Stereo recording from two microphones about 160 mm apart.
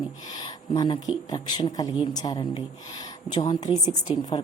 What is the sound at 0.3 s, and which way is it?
Speech, 30° left (ahead or behind).